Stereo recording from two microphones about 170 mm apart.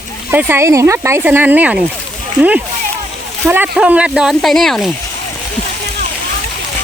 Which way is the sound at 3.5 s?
10° right (ahead or behind).